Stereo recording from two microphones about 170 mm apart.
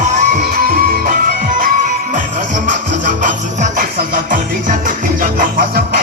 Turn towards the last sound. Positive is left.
turn(degrees=-55)  # may be behind; listen again after turning